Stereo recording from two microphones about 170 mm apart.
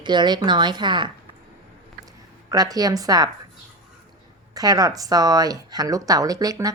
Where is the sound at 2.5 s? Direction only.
20° right (ahead or behind).